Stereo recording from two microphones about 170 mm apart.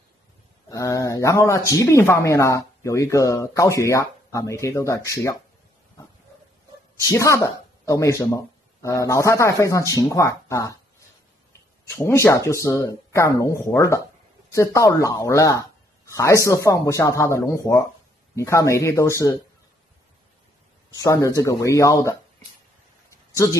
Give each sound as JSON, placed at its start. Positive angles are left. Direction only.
{"t": 0.7, "sound": "speech", "side_deg": 20}
{"t": 7.1, "sound": "speech", "side_deg": 15}
{"t": 11.9, "sound": "speech", "side_deg": 15}
{"t": 20.9, "sound": "speech", "side_deg": 20}
{"t": 23.3, "sound": "speech", "side_deg": 20}